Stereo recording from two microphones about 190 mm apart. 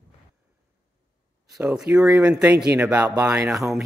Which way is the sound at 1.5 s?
5° right (ahead or behind).